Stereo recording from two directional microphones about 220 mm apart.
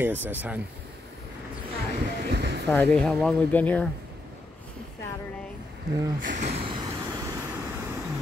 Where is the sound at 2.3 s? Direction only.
50° right (ahead or behind).